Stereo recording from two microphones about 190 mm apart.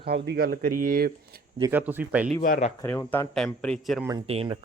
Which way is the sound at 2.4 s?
40° left (ahead or behind).